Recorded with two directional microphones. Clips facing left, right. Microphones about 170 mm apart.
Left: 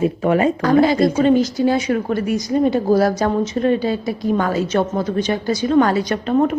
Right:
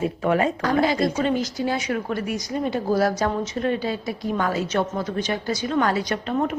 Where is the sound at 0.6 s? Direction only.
35° left (ahead or behind).